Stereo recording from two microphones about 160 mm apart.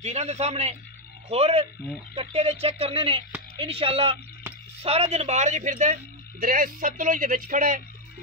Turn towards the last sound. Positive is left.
turn(degrees=-55)  # may be behind; listen again after turning